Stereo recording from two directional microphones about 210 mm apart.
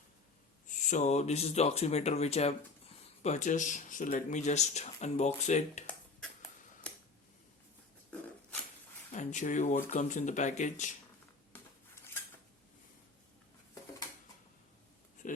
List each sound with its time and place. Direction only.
0.8 s speech: 35° left (ahead or behind)
5.8 s a sound: 5° left (ahead or behind)
9.1 s speech: 35° left (ahead or behind)